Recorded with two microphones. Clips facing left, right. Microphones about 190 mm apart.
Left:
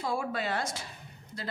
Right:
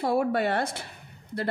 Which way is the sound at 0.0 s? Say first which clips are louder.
Right 8 dB; 60° right (ahead or behind).